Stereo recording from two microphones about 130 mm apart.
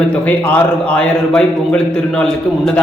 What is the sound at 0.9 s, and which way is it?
Speech, 10° left (ahead or behind).